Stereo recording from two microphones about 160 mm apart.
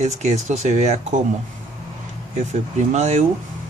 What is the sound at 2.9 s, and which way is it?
Speech, 45° right (ahead or behind).